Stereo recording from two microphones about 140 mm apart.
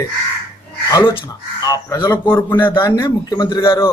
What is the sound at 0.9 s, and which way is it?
A man's voice, 35° left (ahead or behind).